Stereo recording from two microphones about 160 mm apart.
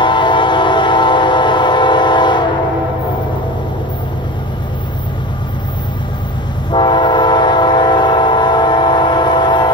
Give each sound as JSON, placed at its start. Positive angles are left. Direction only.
{"t": 0.0, "sound": "train", "side_deg": 30}
{"t": 6.7, "sound": "train", "side_deg": 30}